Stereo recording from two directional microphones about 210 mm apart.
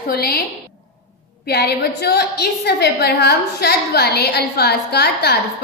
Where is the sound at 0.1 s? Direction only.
50° left (ahead or behind).